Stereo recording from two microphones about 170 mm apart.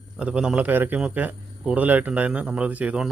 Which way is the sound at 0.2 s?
5° right (ahead or behind).